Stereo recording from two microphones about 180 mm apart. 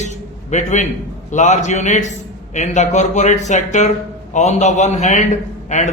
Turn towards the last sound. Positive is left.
turn(degrees=40)  # may be behind; listen again after turning